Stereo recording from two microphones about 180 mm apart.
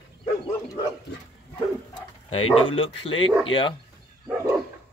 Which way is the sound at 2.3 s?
30° left (ahead or behind).